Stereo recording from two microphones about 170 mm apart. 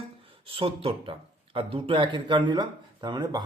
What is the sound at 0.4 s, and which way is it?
Speech, 30° right (ahead or behind).